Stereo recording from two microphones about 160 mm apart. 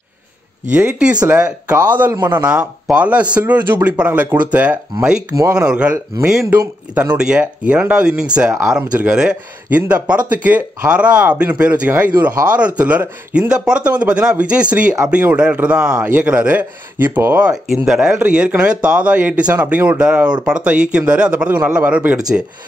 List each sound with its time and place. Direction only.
0.7 s a man's voice: 10° right (ahead or behind)
2.1 s a man's voice: 25° right (ahead or behind)
2.4 s a man's voice: 5° right (ahead or behind)